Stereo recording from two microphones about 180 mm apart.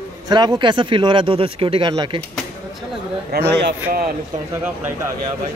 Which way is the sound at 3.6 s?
60° right (ahead or behind).